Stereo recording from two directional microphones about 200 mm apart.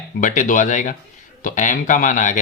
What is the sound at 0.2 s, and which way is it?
Speech, 40° left (ahead or behind).